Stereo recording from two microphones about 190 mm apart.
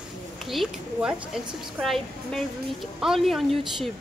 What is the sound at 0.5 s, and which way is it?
A man's voice, centre (ahead or behind).